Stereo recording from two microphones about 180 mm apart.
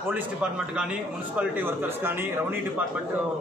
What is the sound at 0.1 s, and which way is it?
A man's voice, 5° right (ahead or behind).